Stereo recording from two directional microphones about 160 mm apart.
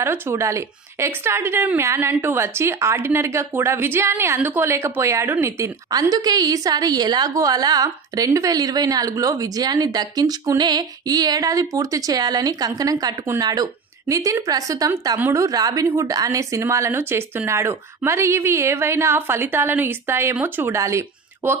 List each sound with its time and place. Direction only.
0.0 s a woman's voice: 15° right (ahead or behind)